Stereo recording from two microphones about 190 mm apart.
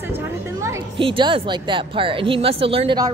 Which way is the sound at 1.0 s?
25° right (ahead or behind).